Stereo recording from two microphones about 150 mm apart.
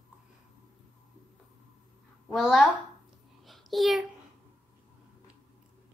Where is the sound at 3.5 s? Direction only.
Centre (ahead or behind).